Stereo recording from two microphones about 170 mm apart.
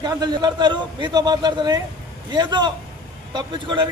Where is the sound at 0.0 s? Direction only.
25° right (ahead or behind).